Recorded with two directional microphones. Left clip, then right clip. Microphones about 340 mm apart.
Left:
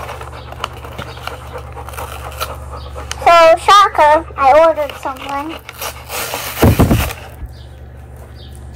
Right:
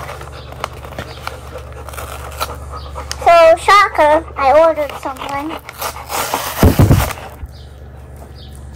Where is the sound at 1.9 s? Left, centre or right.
Centre.